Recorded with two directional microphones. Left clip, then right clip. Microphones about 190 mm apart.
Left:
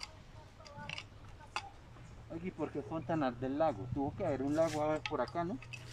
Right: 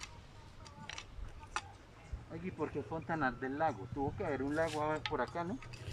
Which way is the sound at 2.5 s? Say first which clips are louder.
Right 1 dB; 15° left (ahead or behind).